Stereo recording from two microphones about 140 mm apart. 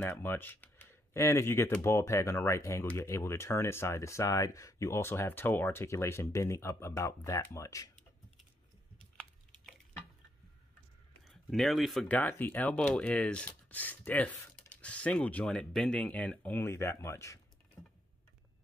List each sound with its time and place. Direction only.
0.0 s speech: 15° left (ahead or behind)
11.2 s speech: centre (ahead or behind); by 17.4 s 20° left (ahead or behind)